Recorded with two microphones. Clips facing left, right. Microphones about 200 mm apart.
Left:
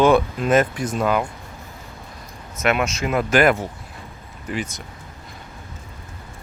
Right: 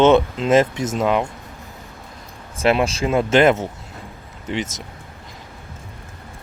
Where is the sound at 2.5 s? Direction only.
30° right (ahead or behind).